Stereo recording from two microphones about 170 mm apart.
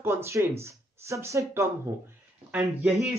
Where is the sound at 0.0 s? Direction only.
15° right (ahead or behind).